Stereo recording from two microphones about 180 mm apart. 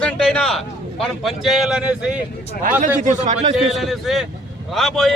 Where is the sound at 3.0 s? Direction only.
40° right (ahead or behind).